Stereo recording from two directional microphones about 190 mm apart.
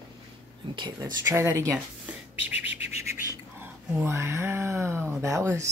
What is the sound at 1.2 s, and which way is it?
Speech, 15° right (ahead or behind).